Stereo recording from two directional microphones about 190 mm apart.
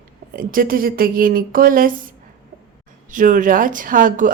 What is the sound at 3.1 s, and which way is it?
Speech, 45° right (ahead or behind).